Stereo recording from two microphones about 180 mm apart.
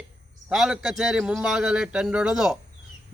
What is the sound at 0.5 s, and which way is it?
A man's voice, 5° right (ahead or behind).